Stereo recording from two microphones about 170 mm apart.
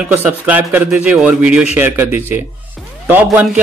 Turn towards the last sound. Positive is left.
turn(degrees=-10)  # may be behind; listen again after turning